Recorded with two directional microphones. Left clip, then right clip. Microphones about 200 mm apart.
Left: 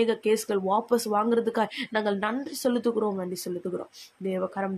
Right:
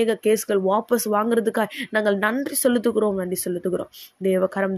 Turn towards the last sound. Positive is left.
turn(degrees=-20)  # may be behind; listen again after turning